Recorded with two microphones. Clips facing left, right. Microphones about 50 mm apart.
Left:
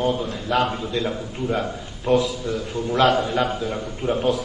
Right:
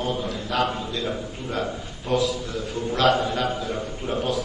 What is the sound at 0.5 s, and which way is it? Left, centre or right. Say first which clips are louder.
A man's voice: left 4 dB; centre.